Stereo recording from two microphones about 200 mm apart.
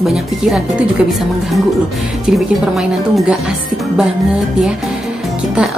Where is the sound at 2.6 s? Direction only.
5° right (ahead or behind).